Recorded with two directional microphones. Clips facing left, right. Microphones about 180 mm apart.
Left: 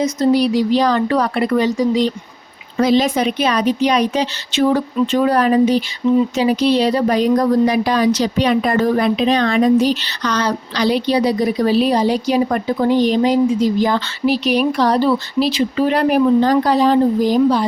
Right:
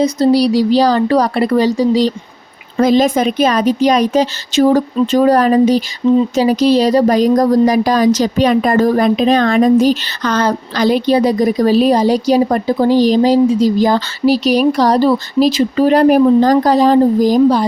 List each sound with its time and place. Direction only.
0.0 s speech: 35° right (ahead or behind)
2.7 s speech: 45° right (ahead or behind)